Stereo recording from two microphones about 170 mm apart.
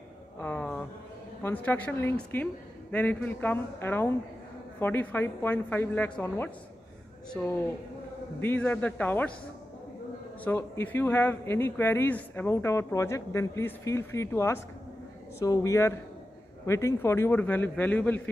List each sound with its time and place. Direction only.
0.4 s a sound: 10° left (ahead or behind)
1.4 s speech: 10° left (ahead or behind)
8.4 s speech: 10° left (ahead or behind)
10.4 s speech: 10° left (ahead or behind)